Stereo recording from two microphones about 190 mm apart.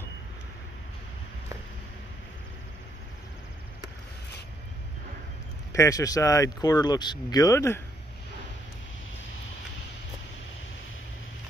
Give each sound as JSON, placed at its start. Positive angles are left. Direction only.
{"t": 5.7, "sound": "speech", "side_deg": 15}